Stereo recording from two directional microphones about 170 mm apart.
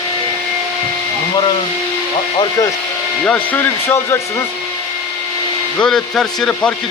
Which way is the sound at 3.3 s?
10° left (ahead or behind).